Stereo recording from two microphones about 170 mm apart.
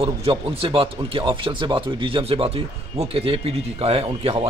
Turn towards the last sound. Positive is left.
turn(degrees=-35)  # may be behind; listen again after turning